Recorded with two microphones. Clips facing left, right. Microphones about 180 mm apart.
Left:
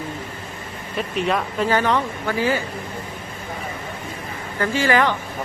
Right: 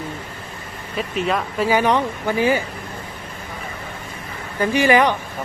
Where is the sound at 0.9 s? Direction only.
Centre (ahead or behind); by 2.6 s 20° right (ahead or behind).